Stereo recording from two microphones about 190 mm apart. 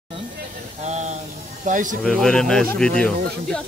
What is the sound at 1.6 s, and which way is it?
Speech, 45° right (ahead or behind).